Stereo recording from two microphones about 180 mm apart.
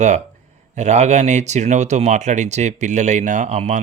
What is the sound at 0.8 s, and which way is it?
Speech, 40° right (ahead or behind).